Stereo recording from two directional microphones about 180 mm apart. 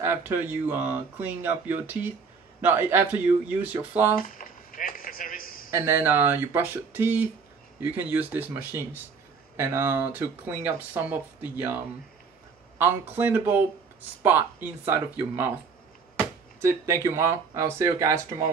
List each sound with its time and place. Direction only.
0.0 s speech: 15° right (ahead or behind)
4.1 s chop: 50° left (ahead or behind)
5.7 s speech: 15° right (ahead or behind)
16.6 s speech: 15° right (ahead or behind)